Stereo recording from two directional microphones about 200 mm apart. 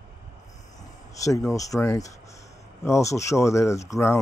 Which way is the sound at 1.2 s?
15° left (ahead or behind).